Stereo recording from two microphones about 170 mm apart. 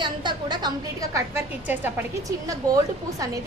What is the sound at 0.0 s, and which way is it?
A woman's voice, 25° right (ahead or behind).